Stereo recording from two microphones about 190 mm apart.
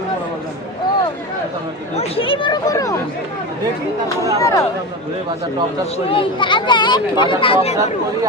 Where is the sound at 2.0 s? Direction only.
30° left (ahead or behind).